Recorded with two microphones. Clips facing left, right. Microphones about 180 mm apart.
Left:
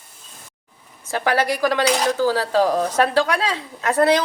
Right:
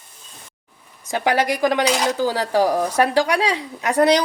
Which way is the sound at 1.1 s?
15° right (ahead or behind).